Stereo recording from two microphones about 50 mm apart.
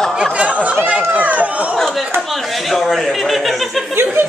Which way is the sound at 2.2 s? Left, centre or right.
Centre.